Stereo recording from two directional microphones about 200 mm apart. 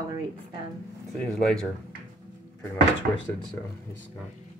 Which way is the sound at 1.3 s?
5° left (ahead or behind).